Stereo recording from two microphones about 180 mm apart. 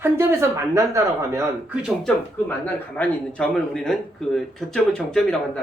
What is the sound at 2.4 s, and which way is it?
A man's voice, 10° left (ahead or behind).